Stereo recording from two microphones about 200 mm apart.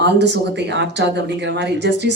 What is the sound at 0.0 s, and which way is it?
A woman's voice, 60° right (ahead or behind).